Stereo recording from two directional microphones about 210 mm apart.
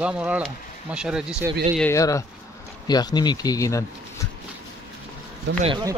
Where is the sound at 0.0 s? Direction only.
5° right (ahead or behind).